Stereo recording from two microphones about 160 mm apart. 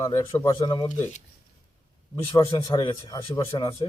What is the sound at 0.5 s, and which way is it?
Speech, 30° left (ahead or behind).